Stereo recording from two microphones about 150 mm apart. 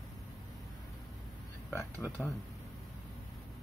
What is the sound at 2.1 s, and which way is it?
Speech, 15° left (ahead or behind).